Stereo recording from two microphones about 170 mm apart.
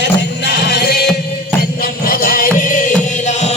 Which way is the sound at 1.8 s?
60° left (ahead or behind).